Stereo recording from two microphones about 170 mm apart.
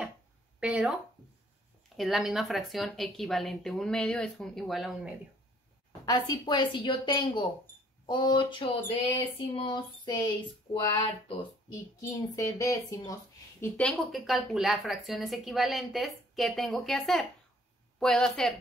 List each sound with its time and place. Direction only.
0.6 s speech: 5° right (ahead or behind)
2.0 s speech: centre (ahead or behind)
6.0 s a woman's voice: 25° left (ahead or behind)
12.0 s a woman's voice: 20° left (ahead or behind)
13.7 s speech: 5° left (ahead or behind)